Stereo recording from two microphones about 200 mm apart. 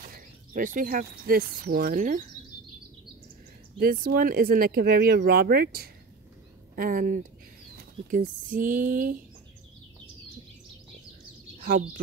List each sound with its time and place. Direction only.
0.1 s speech: 45° right (ahead or behind)
3.7 s speech: 50° right (ahead or behind)